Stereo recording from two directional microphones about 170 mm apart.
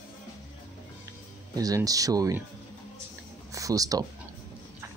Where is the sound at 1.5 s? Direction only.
20° right (ahead or behind).